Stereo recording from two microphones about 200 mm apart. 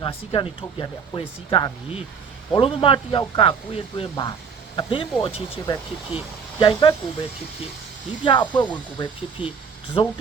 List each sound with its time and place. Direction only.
0.0 s speech: 25° left (ahead or behind)